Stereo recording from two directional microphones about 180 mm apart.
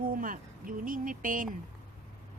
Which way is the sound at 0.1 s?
50° right (ahead or behind).